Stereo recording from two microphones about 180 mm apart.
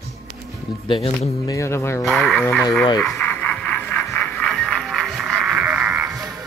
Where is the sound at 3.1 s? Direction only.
10° left (ahead or behind).